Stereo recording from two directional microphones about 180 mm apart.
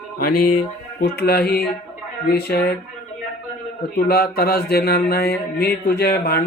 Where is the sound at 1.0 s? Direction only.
60° left (ahead or behind).